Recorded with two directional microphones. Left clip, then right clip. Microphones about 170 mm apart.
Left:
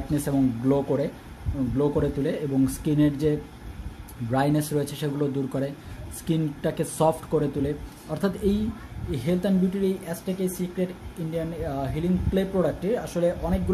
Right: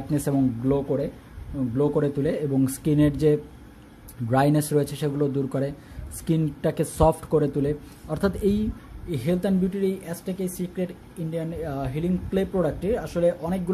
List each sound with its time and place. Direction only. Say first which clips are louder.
0.1 s speech: right 1 dB; 30° right (ahead or behind)
0.7 s speech: left 2 dB; 20° right (ahead or behind)
1.8 s speech: right 2 dB; 30° right (ahead or behind)